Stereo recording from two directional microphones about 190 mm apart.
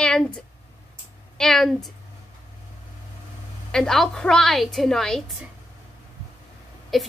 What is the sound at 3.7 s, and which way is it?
A woman's voice, 5° left (ahead or behind).